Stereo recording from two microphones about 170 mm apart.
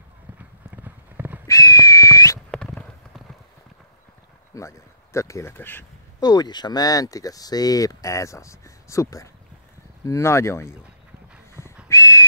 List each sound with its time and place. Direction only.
0.4 s clip-clop: 10° right (ahead or behind)
1.5 s whistle: 20° left (ahead or behind)
2.5 s clip-clop: 5° left (ahead or behind)
4.6 s a sound: 15° left (ahead or behind)
6.2 s speech: 25° left (ahead or behind)
11.9 s a sound: 15° left (ahead or behind)